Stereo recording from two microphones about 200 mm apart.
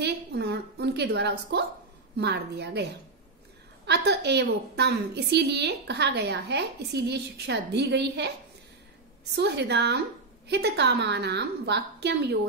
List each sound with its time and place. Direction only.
0.0 s a sound: 55° right (ahead or behind)
2.1 s a woman's voice: 55° right (ahead or behind)
9.3 s a woman's voice: 55° right (ahead or behind)